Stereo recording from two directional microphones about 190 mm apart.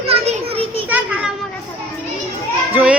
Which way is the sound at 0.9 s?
10° right (ahead or behind).